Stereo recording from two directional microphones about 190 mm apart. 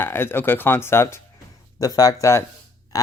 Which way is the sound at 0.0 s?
10° left (ahead or behind).